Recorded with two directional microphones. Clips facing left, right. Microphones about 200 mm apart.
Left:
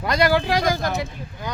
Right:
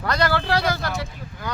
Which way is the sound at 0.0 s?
15° left (ahead or behind).